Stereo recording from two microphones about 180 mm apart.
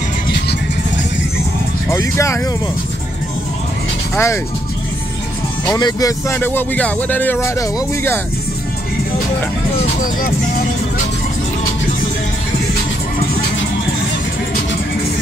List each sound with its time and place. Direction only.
1.9 s speech: 15° left (ahead or behind)
4.1 s speech: 15° left (ahead or behind)
5.7 s speech: 20° left (ahead or behind)